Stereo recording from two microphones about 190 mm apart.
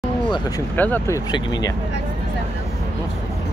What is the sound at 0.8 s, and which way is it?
Speech, 10° left (ahead or behind).